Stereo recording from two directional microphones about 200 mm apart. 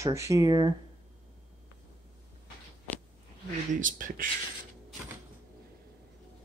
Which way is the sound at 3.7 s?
40° right (ahead or behind).